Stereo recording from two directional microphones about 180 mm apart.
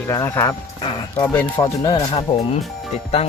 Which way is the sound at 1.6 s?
25° left (ahead or behind).